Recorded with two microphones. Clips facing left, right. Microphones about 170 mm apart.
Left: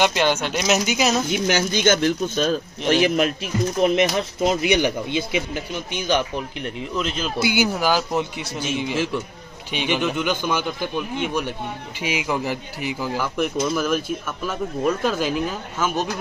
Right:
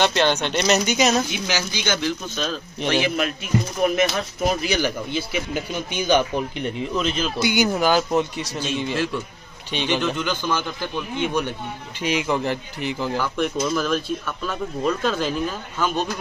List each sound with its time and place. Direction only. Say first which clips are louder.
0.0 s speech: even; 10° left (ahead or behind)
1.5 s a man's voice: left 9 dB; 50° left (ahead or behind)
3.8 s speech: left 3 dB; 20° left (ahead or behind)
5.5 s speech: right 1 dB; centre (ahead or behind)